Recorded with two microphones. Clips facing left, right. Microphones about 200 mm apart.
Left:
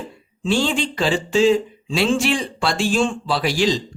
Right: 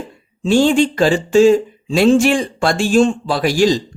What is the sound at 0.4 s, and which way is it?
Speech, 45° right (ahead or behind).